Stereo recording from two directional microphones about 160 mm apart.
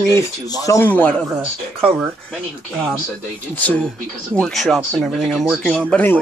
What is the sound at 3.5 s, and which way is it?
Speech, 10° left (ahead or behind).